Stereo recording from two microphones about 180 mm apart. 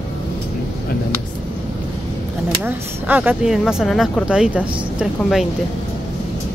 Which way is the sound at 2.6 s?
10° right (ahead or behind).